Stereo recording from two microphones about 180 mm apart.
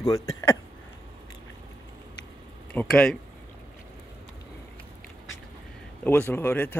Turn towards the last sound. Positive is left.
turn(degrees=10)  # may be behind; listen again after turning